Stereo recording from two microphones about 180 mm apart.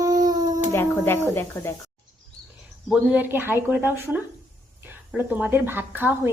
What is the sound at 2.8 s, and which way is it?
A woman's voice, 5° right (ahead or behind).